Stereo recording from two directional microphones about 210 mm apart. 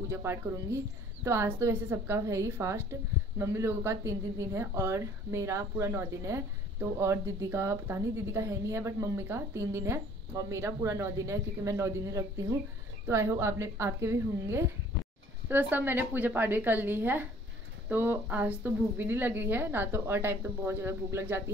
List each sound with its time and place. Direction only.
0.1 s a woman's voice: 10° right (ahead or behind)